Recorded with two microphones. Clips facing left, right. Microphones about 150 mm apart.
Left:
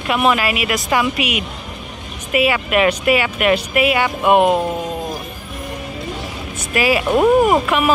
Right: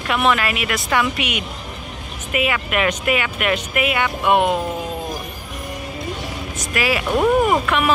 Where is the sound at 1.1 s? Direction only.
30° right (ahead or behind).